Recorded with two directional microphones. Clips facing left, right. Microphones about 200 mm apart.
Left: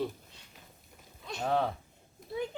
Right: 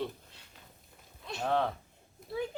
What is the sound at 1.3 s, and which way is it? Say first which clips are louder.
Speech: even; centre (ahead or behind).